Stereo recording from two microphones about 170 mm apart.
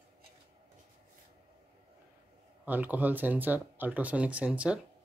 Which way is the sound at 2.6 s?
10° right (ahead or behind).